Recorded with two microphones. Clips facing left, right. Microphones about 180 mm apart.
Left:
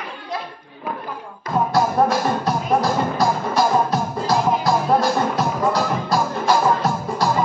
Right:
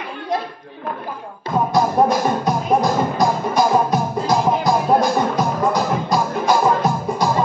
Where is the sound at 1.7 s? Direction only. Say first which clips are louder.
Right 2 dB; 20° right (ahead or behind).